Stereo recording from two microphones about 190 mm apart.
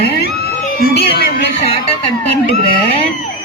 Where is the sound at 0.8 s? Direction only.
50° left (ahead or behind).